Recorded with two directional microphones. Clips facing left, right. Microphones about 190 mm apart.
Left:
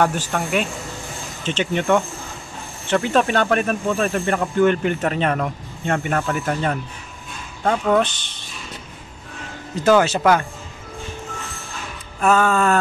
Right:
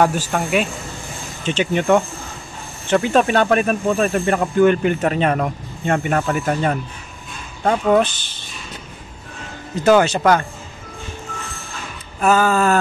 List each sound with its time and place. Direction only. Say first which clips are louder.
0.0 s speech: right 3 dB; 10° right (ahead or behind)
8.0 s speech: right 2 dB; 5° right (ahead or behind)
9.8 s speech: right 2 dB; centre (ahead or behind)
12.2 s speech: right 1 dB; 5° right (ahead or behind)